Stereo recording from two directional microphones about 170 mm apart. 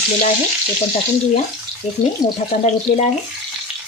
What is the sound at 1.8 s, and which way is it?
Speech, 40° left (ahead or behind).